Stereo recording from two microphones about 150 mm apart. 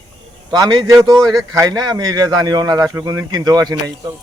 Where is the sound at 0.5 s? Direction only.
30° right (ahead or behind).